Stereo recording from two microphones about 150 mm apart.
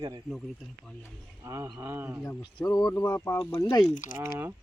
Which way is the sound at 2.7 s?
25° left (ahead or behind).